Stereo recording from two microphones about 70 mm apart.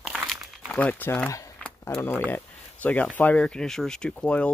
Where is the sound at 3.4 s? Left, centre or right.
Centre.